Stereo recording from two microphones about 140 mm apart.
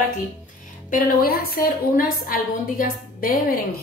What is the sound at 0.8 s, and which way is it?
A woman's voice, 80° left.